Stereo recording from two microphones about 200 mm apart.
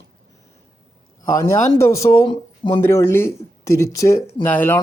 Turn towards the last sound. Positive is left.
turn(degrees=10)  # may be behind; listen again after turning